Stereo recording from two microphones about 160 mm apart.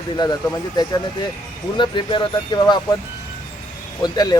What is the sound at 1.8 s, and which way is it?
Speech, 30° left (ahead or behind).